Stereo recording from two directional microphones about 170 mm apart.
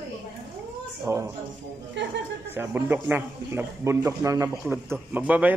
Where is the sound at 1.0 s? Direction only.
15° right (ahead or behind).